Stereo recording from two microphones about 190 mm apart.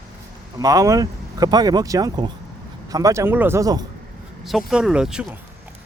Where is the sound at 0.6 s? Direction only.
20° right (ahead or behind).